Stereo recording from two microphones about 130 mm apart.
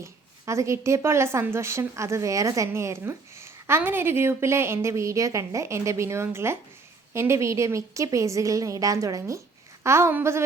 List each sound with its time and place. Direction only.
0.0 s a woman's voice: 20° right (ahead or behind)